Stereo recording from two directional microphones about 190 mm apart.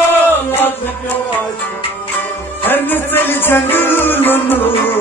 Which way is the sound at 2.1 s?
10° left (ahead or behind).